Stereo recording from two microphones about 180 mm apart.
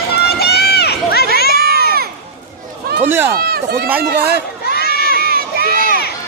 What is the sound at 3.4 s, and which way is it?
Speech, 60° right (ahead or behind).